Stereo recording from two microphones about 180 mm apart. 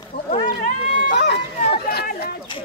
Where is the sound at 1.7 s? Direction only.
60° left (ahead or behind).